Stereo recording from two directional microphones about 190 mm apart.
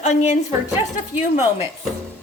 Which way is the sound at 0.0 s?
35° left (ahead or behind).